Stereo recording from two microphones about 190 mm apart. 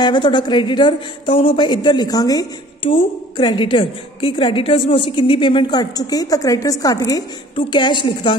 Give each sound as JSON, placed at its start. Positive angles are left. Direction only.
{"t": 0.0, "sound": "a woman's voice", "side_deg": 25}